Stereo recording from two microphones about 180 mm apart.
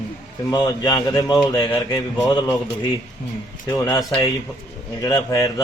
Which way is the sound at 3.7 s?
20° left (ahead or behind).